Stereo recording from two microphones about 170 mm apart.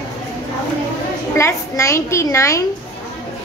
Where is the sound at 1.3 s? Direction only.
15° left (ahead or behind).